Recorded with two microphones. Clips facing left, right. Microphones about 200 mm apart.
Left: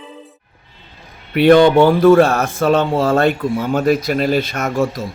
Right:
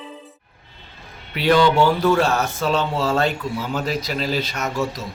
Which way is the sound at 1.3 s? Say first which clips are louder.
Left 7 dB; 55° left (ahead or behind).